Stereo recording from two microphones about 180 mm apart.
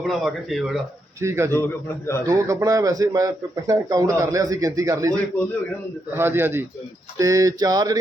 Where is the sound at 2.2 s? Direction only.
20° right (ahead or behind).